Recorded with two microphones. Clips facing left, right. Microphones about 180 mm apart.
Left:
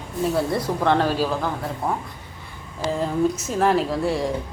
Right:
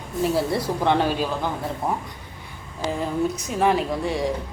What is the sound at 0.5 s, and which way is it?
Speech, 25° right (ahead or behind).